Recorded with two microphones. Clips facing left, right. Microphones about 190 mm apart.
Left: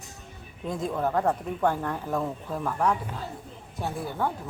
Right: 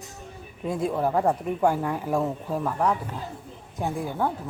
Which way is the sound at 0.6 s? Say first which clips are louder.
Right 3 dB; 10° right (ahead or behind).